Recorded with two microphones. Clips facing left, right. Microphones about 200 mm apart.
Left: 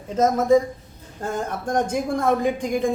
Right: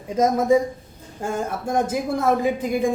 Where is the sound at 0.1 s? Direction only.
10° right (ahead or behind).